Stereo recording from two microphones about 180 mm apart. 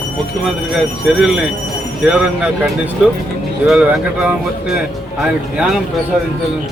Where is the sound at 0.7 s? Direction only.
Centre (ahead or behind).